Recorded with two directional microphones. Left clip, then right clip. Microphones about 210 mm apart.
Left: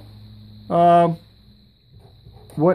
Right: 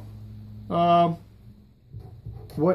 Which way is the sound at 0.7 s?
35° left (ahead or behind).